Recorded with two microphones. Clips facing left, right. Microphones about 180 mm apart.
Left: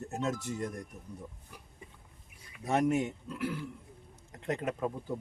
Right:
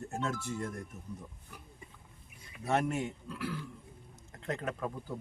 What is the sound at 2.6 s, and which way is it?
Speech, 15° left (ahead or behind).